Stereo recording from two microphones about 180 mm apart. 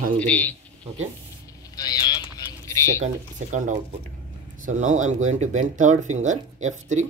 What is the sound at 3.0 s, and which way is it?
Speech, 45° right (ahead or behind).